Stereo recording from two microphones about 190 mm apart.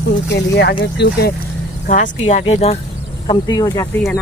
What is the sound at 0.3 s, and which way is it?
Speech, 65° left (ahead or behind).